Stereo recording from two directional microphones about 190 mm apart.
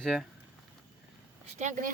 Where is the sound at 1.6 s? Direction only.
40° right (ahead or behind).